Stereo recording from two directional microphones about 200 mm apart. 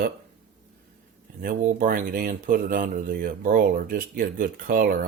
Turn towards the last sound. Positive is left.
turn(degrees=-45)  # may be behind; listen again after turning